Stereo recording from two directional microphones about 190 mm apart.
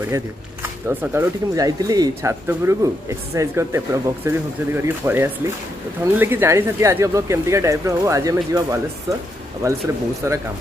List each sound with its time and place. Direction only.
0.0 s speech: 15° right (ahead or behind)